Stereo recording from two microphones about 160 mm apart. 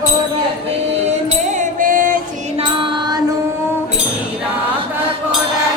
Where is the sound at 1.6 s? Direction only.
55° right (ahead or behind).